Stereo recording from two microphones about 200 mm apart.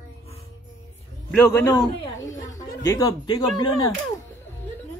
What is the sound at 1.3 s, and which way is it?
A man's voice, 10° left (ahead or behind).